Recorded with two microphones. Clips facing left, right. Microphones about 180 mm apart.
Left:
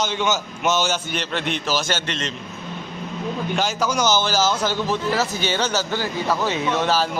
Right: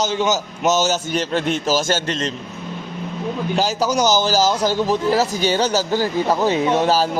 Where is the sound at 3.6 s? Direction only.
35° right (ahead or behind).